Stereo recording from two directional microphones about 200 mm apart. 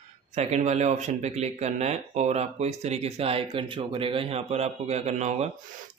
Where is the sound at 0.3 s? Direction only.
35° right (ahead or behind).